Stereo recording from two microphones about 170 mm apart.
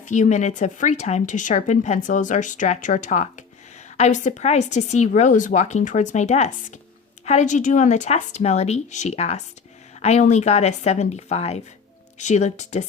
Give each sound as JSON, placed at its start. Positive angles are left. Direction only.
{"t": 0.0, "sound": "speech", "side_deg": 45}